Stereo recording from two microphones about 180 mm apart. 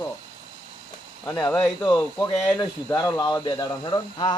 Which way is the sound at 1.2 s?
15° left (ahead or behind).